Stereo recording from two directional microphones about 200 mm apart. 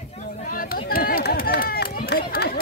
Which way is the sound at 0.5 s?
45° left (ahead or behind).